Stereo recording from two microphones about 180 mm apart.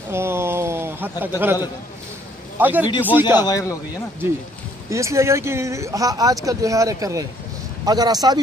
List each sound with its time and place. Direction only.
0.1 s speech: 15° right (ahead or behind)
2.6 s speech: 10° right (ahead or behind)
3.3 s a man's voice: 20° left (ahead or behind)
4.8 s speech: 15° right (ahead or behind)